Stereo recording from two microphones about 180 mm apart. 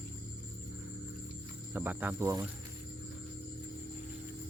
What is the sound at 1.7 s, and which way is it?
Speech, 10° right (ahead or behind).